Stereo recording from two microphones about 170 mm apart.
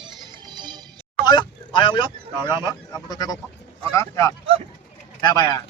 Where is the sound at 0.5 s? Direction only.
25° right (ahead or behind).